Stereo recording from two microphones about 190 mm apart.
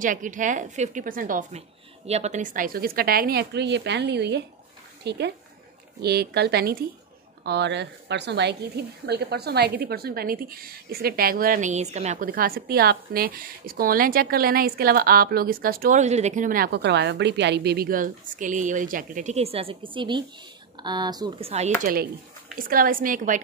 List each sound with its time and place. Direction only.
0.0 s a woman's voice: 45° right (ahead or behind); by 21.5 s 20° right (ahead or behind)
21.5 s speech: 35° right (ahead or behind)
22.6 s a woman's voice: 50° right (ahead or behind)